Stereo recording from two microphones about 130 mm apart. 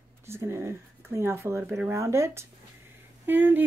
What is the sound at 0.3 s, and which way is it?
Speech, 20° right (ahead or behind).